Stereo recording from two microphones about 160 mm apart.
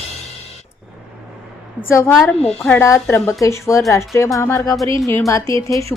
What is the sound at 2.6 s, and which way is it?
A woman's voice, 15° left (ahead or behind).